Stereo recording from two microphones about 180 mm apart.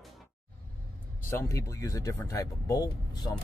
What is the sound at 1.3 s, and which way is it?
Speech, 15° left (ahead or behind).